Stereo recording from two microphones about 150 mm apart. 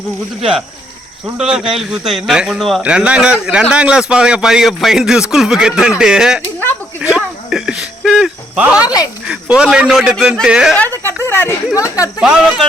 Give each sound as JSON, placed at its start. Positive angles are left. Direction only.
{"t": 1.2, "sound": "speech", "side_deg": -5}
{"t": 7.0, "sound": "cricket", "side_deg": -5}
{"t": 9.2, "sound": "speech", "side_deg": -5}
{"t": 11.0, "sound": "speech", "side_deg": 15}
{"t": 12.2, "sound": "speech", "side_deg": -5}